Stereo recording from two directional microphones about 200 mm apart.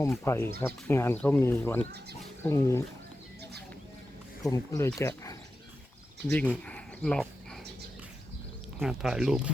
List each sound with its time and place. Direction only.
0.0 s speech: 10° left (ahead or behind)
4.4 s speech: 15° left (ahead or behind)
6.7 s a sound: 5° left (ahead or behind)
8.8 s speech: centre (ahead or behind)